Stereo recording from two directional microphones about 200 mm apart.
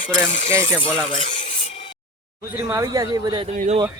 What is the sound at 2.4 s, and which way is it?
Speech, 15° right (ahead or behind).